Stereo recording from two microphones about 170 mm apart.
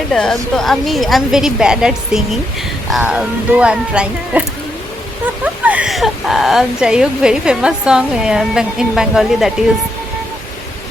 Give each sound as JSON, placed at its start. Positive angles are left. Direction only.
{"t": 0.1, "sound": "speech", "side_deg": 5}
{"t": 5.6, "sound": "speech", "side_deg": -5}